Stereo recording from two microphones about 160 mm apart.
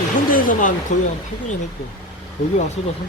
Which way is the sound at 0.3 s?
55° left (ahead or behind).